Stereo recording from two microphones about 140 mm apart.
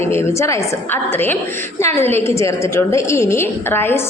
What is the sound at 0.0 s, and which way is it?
A woman's voice, 15° left (ahead or behind).